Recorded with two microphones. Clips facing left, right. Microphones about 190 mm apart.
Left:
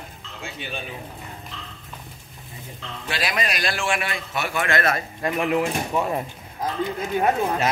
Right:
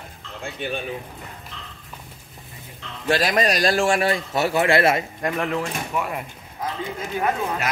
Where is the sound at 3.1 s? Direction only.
45° right (ahead or behind); by 5.0 s 30° right (ahead or behind).